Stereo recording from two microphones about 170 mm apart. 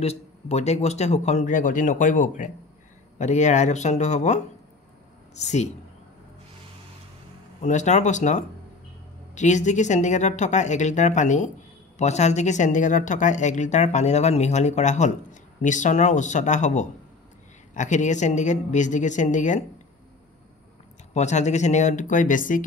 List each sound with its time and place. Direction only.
0.0 s speech: 40° left (ahead or behind)
7.6 s speech: 45° left (ahead or behind)
21.1 s speech: 40° left (ahead or behind)